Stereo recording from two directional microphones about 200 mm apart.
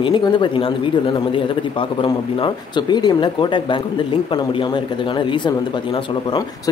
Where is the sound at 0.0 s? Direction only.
25° left (ahead or behind).